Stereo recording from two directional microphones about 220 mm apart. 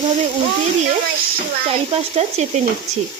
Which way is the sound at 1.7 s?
30° right (ahead or behind).